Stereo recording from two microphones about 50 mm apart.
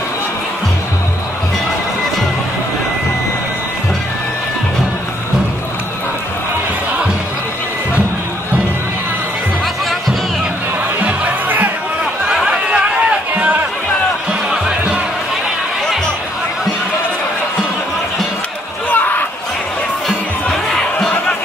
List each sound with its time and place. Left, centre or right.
11.0 s music: right
12.4 s chatter: right
14.5 s music: centre
18.9 s a sound: left